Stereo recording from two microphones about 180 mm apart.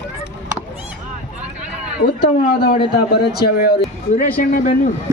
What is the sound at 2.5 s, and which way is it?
Speech, 60° left (ahead or behind).